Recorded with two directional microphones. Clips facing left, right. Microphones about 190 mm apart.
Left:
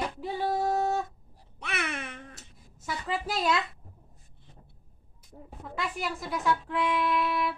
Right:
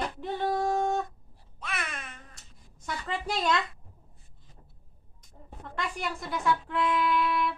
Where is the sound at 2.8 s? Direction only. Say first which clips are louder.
Left 1 dB; 5° left (ahead or behind).